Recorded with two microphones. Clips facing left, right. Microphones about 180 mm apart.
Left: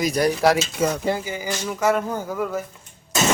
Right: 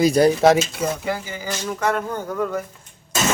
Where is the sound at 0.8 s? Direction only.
55° left (ahead or behind).